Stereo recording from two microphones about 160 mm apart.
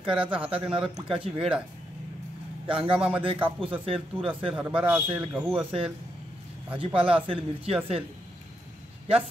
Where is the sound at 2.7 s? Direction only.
35° right (ahead or behind).